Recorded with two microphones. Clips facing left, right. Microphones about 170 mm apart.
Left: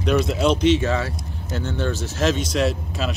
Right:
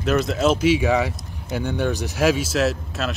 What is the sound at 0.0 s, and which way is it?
Speech, centre (ahead or behind).